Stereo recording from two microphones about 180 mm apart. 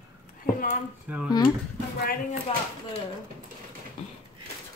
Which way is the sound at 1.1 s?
10° right (ahead or behind).